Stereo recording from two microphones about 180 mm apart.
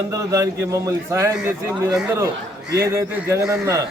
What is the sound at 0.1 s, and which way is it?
A man's voice, 20° right (ahead or behind).